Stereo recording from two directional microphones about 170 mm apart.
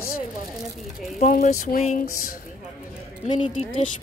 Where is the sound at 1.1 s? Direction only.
50° left (ahead or behind).